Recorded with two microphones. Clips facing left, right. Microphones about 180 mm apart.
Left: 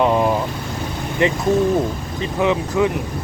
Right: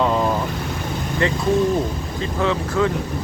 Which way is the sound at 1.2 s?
15° left (ahead or behind).